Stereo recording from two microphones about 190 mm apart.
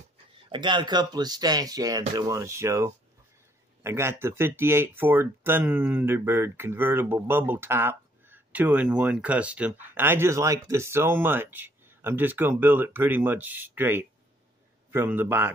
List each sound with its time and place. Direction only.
0.5 s speech: 25° right (ahead or behind)